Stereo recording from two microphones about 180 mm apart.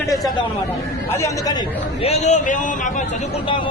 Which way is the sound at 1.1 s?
15° left (ahead or behind).